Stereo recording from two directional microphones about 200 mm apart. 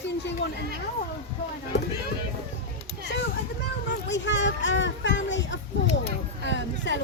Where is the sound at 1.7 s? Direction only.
55° left (ahead or behind).